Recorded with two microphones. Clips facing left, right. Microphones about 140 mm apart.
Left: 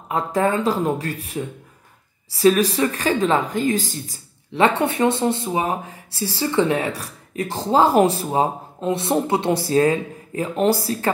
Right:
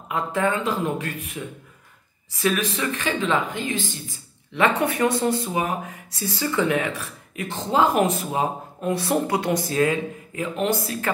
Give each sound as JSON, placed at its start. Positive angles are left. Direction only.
{"t": 0.1, "sound": "speech", "side_deg": 35}